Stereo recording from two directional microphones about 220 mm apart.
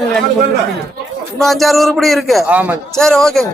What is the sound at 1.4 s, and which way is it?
A man's voice, centre (ahead or behind).